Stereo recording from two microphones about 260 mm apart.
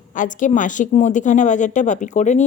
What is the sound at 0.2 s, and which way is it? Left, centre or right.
Speech, left.